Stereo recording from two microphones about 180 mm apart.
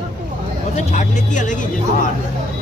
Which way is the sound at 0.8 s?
40° left (ahead or behind).